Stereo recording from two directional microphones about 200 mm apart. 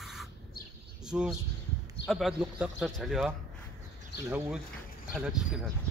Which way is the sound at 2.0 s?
Centre (ahead or behind).